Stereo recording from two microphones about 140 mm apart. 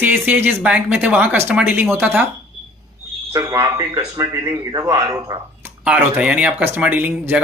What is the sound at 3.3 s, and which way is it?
Speech, 25° right (ahead or behind).